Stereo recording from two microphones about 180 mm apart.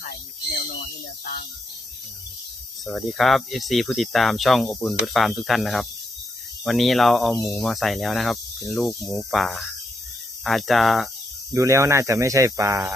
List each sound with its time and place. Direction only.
0.0 s a sound: 55° left (ahead or behind)
1.2 s speech: 55° left (ahead or behind)
2.8 s speech: centre (ahead or behind)
11.5 s speech: 15° right (ahead or behind)